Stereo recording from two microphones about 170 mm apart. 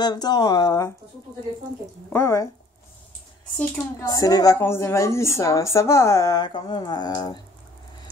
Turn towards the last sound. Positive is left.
turn(degrees=25)  # may be behind; listen again after turning